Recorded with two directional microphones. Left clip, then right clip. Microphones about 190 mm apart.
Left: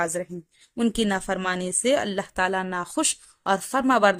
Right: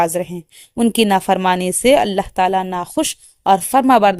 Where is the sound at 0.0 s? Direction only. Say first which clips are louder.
Right 10 dB; 30° right (ahead or behind).